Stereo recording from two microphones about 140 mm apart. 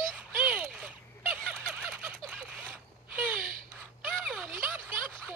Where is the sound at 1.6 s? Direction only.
5° left (ahead or behind).